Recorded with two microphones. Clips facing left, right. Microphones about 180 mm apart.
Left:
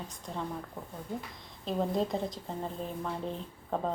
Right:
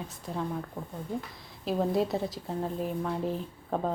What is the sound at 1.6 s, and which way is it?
Speech, 5° right (ahead or behind).